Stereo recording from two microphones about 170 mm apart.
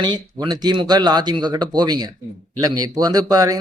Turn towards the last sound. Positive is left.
turn(degrees=-20)  # may be behind; listen again after turning